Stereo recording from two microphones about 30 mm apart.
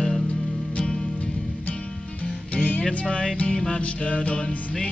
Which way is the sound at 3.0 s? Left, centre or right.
Left.